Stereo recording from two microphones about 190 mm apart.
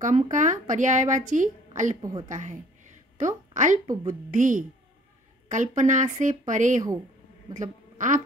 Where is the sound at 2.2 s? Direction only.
40° right (ahead or behind).